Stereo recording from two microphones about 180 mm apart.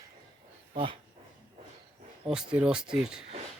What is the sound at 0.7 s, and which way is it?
Speech, 30° right (ahead or behind).